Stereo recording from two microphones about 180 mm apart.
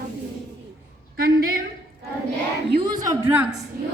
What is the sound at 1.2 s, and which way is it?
Speech, 55° right (ahead or behind).